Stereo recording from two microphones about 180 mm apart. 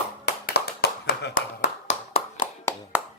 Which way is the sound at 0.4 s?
60° left (ahead or behind).